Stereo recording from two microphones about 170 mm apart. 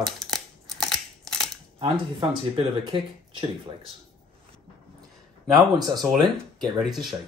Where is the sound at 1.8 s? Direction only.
30° right (ahead or behind).